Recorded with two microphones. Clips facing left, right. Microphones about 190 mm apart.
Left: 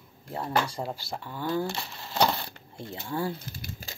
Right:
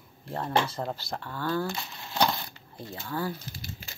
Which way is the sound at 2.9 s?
25° left (ahead or behind).